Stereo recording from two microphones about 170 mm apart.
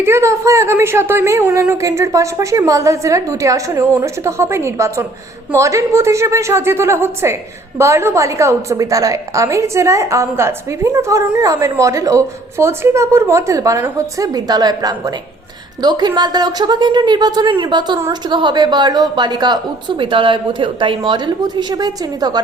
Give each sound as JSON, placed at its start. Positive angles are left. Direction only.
{"t": 0.0, "sound": "a woman's voice", "side_deg": -15}